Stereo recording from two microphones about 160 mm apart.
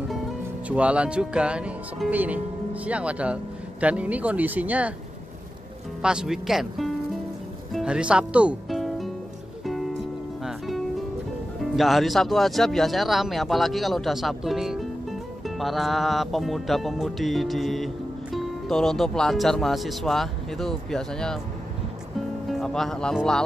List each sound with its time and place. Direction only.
0.7 s speech: 10° right (ahead or behind)
6.0 s speech: 5° right (ahead or behind)
7.7 s music: 5° right (ahead or behind)
11.7 s speech: centre (ahead or behind)
22.5 s speech: centre (ahead or behind)